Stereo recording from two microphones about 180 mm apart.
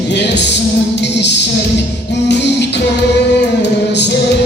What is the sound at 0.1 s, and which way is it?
Music, 75° left (ahead or behind).